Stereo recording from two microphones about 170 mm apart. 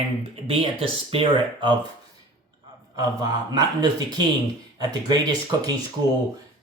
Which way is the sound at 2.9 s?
25° right (ahead or behind).